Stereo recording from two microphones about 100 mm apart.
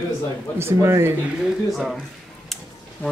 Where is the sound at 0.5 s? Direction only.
25° right (ahead or behind).